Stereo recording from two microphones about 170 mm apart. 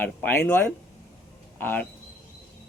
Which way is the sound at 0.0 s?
10° left (ahead or behind).